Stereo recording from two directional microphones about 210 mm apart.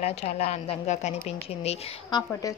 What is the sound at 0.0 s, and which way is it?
A woman's voice, 30° left (ahead or behind).